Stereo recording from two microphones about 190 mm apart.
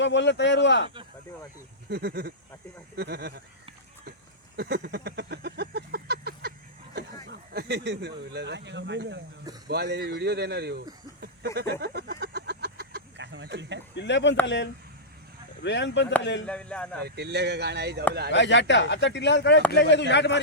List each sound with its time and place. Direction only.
0.0 s speech: 70° left (ahead or behind)
1.9 s speech: 55° right (ahead or behind)
4.5 s a sound: 60° right (ahead or behind)
7.3 s speech: 60° right (ahead or behind)
11.5 s a sound: 60° right (ahead or behind)
13.9 s speech: 65° left (ahead or behind)
16.5 s speech: 5° left (ahead or behind)
17.0 s speech: 60° right (ahead or behind)
18.3 s speech: 70° left (ahead or behind)